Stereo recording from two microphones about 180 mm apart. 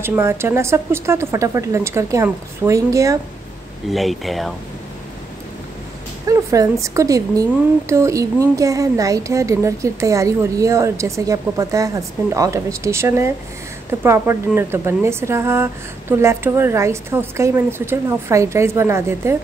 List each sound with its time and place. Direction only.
0.0 s speech: 15° right (ahead or behind)
3.9 s speech: centre (ahead or behind)
6.2 s speech: 20° right (ahead or behind)